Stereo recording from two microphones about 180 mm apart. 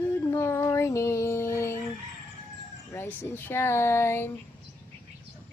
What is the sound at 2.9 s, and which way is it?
Speech, 10° left (ahead or behind).